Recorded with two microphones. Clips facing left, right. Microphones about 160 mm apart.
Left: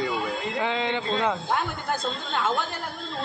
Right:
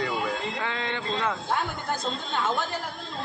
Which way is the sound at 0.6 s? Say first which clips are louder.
Left 4 dB; 20° left (ahead or behind).